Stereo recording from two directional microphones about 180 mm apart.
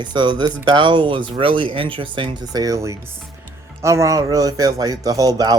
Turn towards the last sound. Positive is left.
turn(degrees=-20)  # may be behind; listen again after turning